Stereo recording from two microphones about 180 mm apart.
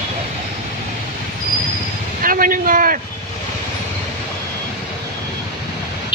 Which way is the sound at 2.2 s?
50° right (ahead or behind).